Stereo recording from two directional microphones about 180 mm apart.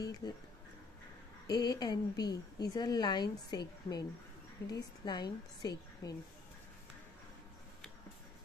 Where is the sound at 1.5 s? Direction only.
20° left (ahead or behind).